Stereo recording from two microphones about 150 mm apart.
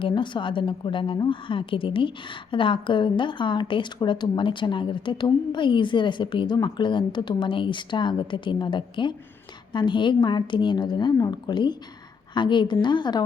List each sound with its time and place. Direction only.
0.0 s a woman's voice: 30° left (ahead or behind)